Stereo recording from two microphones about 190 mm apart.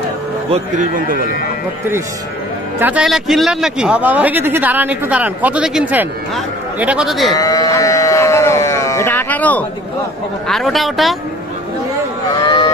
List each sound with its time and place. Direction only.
0.5 s speech: 40° right (ahead or behind)
2.8 s a man's voice: 5° right (ahead or behind)
7.3 s livestock: 20° left (ahead or behind)
10.5 s speech: centre (ahead or behind)
12.4 s a sound: 20° left (ahead or behind)